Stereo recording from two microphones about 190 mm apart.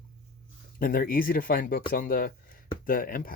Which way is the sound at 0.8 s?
50° left (ahead or behind).